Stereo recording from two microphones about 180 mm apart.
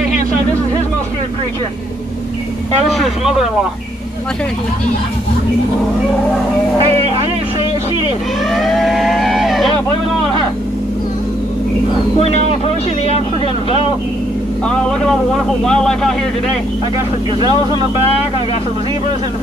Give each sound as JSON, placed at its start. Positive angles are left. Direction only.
{"t": 8.5, "sound": "vehicle", "side_deg": 0}
{"t": 12.2, "sound": "speech", "side_deg": 35}
{"t": 15.6, "sound": "speech", "side_deg": 5}